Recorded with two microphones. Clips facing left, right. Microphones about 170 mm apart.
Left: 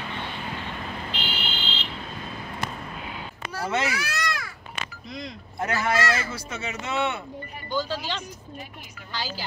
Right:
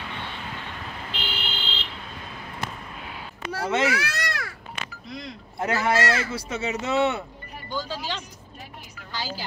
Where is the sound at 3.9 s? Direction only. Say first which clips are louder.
Right 1 dB; 70° right (ahead or behind).